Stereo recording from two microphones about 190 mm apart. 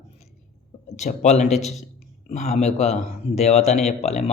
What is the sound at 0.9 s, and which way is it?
Speech, 35° left (ahead or behind).